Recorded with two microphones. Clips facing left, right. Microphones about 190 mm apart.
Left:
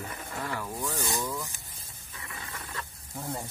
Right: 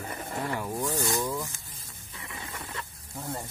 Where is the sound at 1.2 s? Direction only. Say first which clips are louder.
Right 3 dB; 15° right (ahead or behind).